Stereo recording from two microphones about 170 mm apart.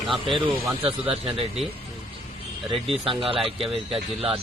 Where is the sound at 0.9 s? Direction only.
30° right (ahead or behind).